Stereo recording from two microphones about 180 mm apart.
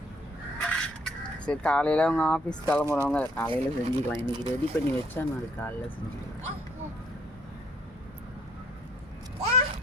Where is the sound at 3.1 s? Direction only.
10° left (ahead or behind).